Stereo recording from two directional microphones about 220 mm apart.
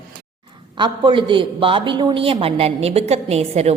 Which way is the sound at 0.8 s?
20° right (ahead or behind).